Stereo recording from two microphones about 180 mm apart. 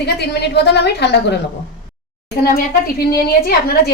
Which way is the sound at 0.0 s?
70° left (ahead or behind).